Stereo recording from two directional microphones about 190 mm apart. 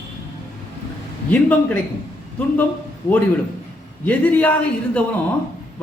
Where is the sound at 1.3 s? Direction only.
10° left (ahead or behind).